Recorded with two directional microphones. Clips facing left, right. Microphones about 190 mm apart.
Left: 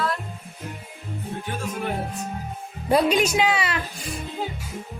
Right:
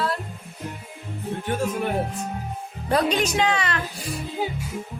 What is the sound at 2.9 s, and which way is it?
Speech, 10° left (ahead or behind).